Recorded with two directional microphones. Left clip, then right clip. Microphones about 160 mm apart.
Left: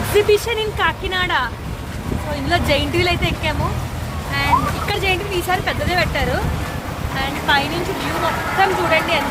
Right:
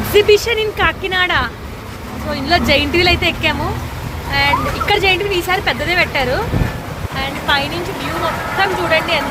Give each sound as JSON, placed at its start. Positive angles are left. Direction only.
{"t": 0.2, "sound": "speech", "side_deg": -10}